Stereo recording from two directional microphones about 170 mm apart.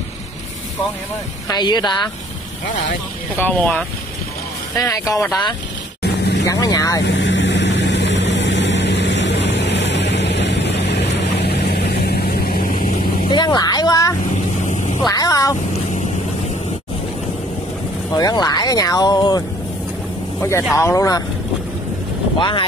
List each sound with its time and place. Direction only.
1.5 s speech: 25° left (ahead or behind)
3.3 s speech: 10° left (ahead or behind)
6.0 s vehicle: 75° left (ahead or behind)
6.4 s speech: 20° left (ahead or behind)
7.1 s vehicle: 90° left; by 12.9 s 55° left (ahead or behind)
13.3 s speech: 25° left (ahead or behind)
14.3 s vehicle: 45° left (ahead or behind)
15.0 s speech: 20° left (ahead or behind)
18.1 s speech: 25° left (ahead or behind)
22.4 s speech: 30° left (ahead or behind)